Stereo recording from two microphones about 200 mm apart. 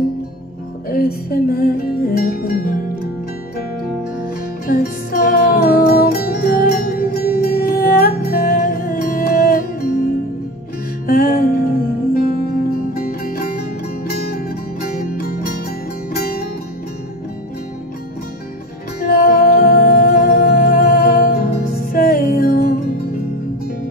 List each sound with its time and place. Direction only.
0.8 s music: 50° left (ahead or behind)
4.6 s music: 50° left (ahead or behind)
18.9 s music: 45° left (ahead or behind)